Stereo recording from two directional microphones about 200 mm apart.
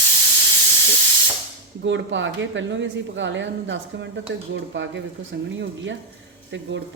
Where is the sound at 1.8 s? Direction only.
65° right (ahead or behind).